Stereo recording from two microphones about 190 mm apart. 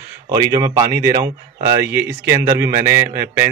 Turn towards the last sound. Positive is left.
turn(degrees=-10)  # may be behind; listen again after turning